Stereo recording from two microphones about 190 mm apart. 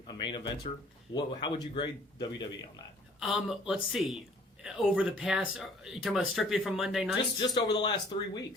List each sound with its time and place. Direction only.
0.1 s speech: 25° left (ahead or behind)
3.2 s speech: 5° right (ahead or behind)
7.3 s speech: 25° left (ahead or behind)